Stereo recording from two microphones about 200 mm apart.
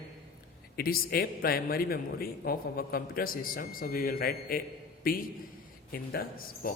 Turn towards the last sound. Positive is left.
turn(degrees=45)  # may be behind; listen again after turning